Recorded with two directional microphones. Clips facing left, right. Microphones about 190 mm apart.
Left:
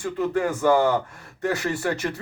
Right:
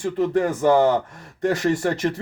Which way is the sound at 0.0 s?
25° right (ahead or behind).